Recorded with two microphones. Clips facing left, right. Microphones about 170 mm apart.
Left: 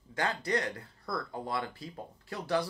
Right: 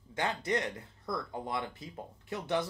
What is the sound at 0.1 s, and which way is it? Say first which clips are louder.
Speech: left 1 dB; 20° right (ahead or behind).